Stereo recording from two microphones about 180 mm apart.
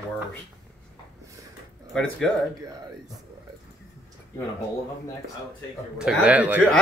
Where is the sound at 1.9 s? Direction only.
5° left (ahead or behind).